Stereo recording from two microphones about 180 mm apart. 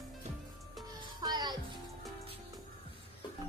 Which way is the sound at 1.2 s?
25° right (ahead or behind).